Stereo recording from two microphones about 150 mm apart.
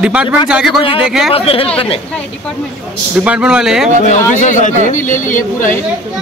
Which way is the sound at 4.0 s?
55° left (ahead or behind).